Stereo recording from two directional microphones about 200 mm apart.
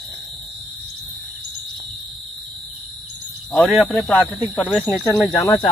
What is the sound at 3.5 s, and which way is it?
Speech, centre (ahead or behind).